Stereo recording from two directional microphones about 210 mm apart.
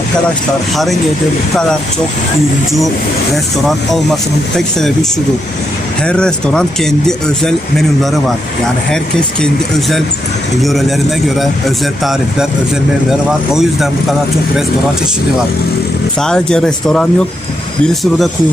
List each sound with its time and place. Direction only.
3.3 s speech: centre (ahead or behind)
6.1 s speech: 5° left (ahead or behind)
10.6 s speech: centre (ahead or behind)
13.1 s speech: centre (ahead or behind)
16.2 s speech: 5° left (ahead or behind)